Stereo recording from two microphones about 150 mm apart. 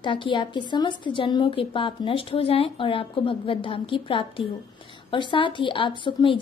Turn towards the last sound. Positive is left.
turn(degrees=35)  # may be behind; listen again after turning